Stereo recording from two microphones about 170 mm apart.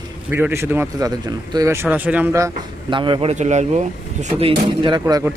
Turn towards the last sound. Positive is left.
turn(degrees=-25)  # may be behind; listen again after turning